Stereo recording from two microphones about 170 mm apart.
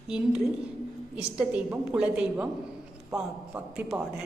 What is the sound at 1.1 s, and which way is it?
A woman's voice, 10° right (ahead or behind).